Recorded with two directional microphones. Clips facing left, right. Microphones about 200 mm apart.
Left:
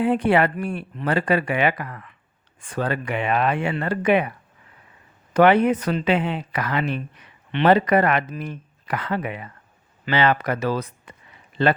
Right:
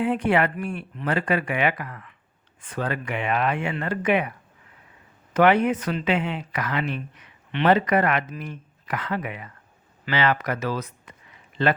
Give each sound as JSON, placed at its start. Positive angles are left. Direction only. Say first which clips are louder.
{"t": 0.0, "sound": "speech", "louder": "left 3 dB", "side_deg": 35}
{"t": 5.3, "sound": "speech", "louder": "left 3 dB", "side_deg": 30}